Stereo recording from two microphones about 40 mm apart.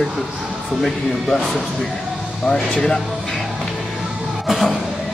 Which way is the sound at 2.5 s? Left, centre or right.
Centre.